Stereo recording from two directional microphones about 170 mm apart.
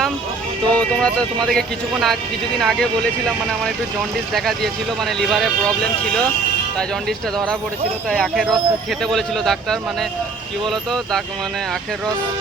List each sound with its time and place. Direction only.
0.7 s speech: 5° left (ahead or behind)
4.4 s speech: centre (ahead or behind)
8.0 s speech: 5° left (ahead or behind)